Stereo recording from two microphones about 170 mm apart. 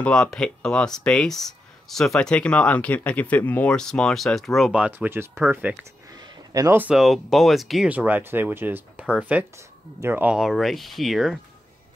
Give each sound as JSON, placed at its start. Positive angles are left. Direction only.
{"t": 0.0, "sound": "speech", "side_deg": 5}